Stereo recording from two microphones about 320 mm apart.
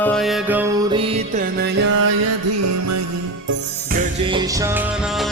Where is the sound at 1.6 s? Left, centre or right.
Right.